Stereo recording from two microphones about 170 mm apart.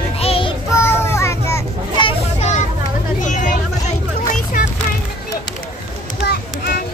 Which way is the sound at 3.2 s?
45° left (ahead or behind).